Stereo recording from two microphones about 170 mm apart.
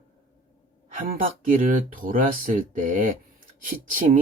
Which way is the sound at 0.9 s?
50° right (ahead or behind).